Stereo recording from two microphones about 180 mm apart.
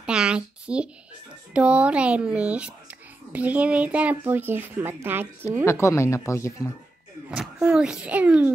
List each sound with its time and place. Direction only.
0.0 s a sound: 5° right (ahead or behind)
1.5 s speech: 5° right (ahead or behind)
5.7 s speech: 15° left (ahead or behind)
7.2 s speech: 5° right (ahead or behind)